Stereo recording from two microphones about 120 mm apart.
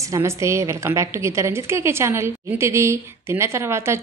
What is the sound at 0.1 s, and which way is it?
A woman's voice, 25° right (ahead or behind).